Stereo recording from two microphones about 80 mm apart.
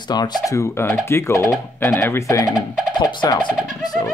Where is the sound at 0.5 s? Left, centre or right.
Left.